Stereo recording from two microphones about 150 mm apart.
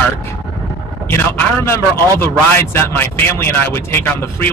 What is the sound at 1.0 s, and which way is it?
Speech, 15° left (ahead or behind).